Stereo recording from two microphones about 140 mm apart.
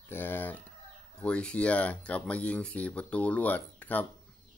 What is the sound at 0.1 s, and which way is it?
Chicken, 15° left (ahead or behind).